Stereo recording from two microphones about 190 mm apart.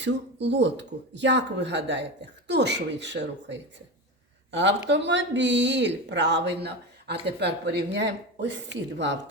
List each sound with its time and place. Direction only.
0.0 s speech: 65° right (ahead or behind)